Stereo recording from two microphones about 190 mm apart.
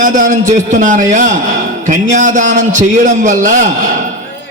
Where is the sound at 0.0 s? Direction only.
40° right (ahead or behind).